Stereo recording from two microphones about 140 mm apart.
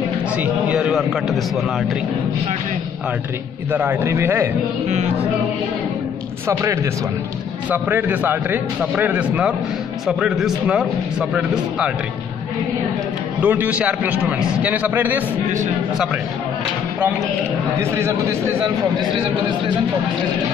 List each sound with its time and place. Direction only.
0.4 s a man's voice: 10° right (ahead or behind)
3.7 s a man's voice: 15° right (ahead or behind)
6.4 s a man's voice: 20° right (ahead or behind)
13.4 s a man's voice: 10° right (ahead or behind)
17.7 s a man's voice: 20° right (ahead or behind)